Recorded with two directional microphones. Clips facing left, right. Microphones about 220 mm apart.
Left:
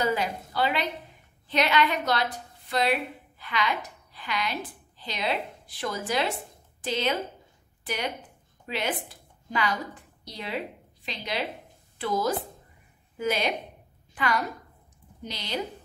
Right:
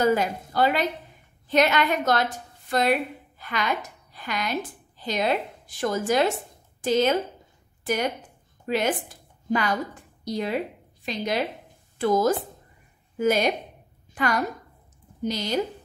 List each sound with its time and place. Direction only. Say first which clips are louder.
0.0 s a woman's voice: right 5 dB; 45° right (ahead or behind)
7.8 s a sound: right 6 dB; 45° right (ahead or behind)
10.2 s a woman's voice: right 7 dB; 45° right (ahead or behind)